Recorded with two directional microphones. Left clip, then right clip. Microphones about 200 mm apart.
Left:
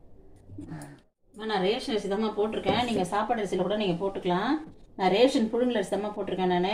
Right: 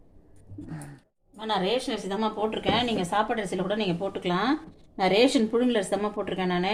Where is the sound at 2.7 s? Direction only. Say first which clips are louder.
Right 3 dB; 45° right (ahead or behind).